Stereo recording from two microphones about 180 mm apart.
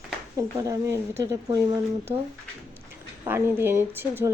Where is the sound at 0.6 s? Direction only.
15° right (ahead or behind).